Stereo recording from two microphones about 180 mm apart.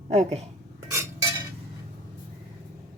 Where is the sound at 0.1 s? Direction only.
35° right (ahead or behind).